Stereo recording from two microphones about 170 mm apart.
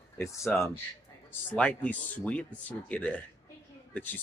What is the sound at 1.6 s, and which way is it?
Speech, 5° left (ahead or behind).